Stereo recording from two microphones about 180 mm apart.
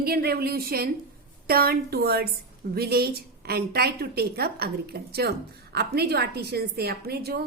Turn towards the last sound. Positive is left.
turn(degrees=-60)  # may be behind; listen again after turning